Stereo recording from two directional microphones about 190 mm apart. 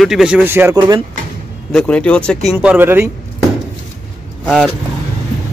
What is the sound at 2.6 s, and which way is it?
Speech, 10° right (ahead or behind).